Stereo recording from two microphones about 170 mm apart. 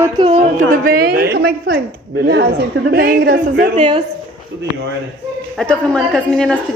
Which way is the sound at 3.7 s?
40° right (ahead or behind).